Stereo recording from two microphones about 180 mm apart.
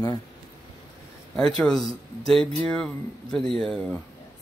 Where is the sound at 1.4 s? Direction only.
5° left (ahead or behind).